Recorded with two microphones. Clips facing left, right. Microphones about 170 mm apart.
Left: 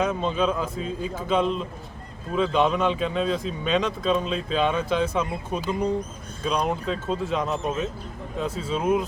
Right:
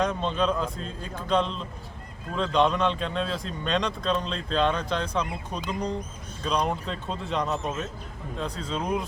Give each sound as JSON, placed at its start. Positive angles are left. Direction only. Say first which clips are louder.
{"t": 0.0, "sound": "speech", "louder": "left 2 dB", "side_deg": 5}